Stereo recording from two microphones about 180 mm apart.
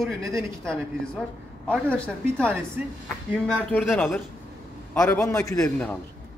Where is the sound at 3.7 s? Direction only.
10° left (ahead or behind).